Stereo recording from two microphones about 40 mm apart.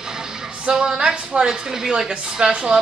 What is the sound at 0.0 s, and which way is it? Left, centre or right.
Music, centre.